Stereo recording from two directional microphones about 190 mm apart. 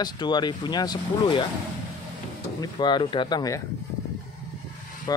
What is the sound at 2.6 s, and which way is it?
Speech, 25° left (ahead or behind).